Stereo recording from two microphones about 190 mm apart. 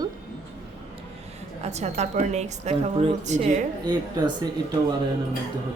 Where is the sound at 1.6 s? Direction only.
35° right (ahead or behind).